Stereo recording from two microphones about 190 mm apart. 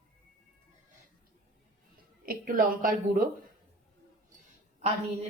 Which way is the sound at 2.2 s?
45° right (ahead or behind).